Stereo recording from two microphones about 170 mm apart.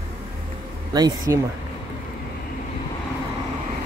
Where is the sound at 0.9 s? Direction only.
20° right (ahead or behind).